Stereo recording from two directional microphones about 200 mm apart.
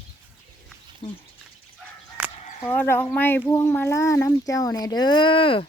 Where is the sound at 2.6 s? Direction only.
10° left (ahead or behind); by 5.6 s 25° left (ahead or behind).